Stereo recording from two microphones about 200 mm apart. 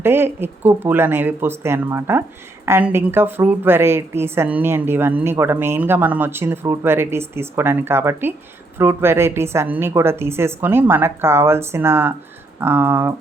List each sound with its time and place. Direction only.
0.0 s a woman's voice: 10° right (ahead or behind)